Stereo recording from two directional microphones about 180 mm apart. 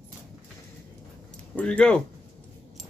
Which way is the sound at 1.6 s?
5° left (ahead or behind).